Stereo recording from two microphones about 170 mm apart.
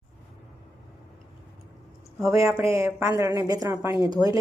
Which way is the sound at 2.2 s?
20° right (ahead or behind).